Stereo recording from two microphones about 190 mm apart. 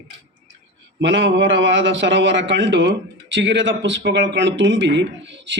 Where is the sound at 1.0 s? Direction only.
75° right (ahead or behind).